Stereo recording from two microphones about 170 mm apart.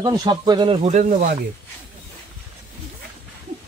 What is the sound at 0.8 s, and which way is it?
Speech, 45° right (ahead or behind).